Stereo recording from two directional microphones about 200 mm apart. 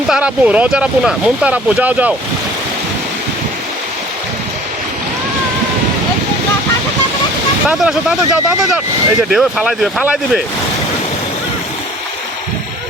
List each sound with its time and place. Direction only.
0.1 s speech: 5° right (ahead or behind)
7.7 s speech: 5° right (ahead or behind)